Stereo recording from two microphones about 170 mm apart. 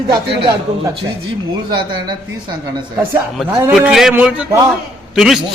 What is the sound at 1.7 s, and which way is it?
Speech, 25° right (ahead or behind).